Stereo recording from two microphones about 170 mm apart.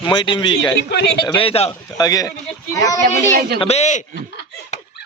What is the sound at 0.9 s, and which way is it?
Speech, 75° left (ahead or behind).